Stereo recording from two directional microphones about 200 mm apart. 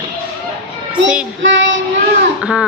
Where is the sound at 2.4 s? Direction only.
5° right (ahead or behind).